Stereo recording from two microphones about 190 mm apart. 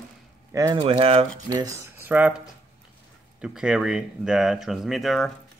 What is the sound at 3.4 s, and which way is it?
Speech, 5° right (ahead or behind).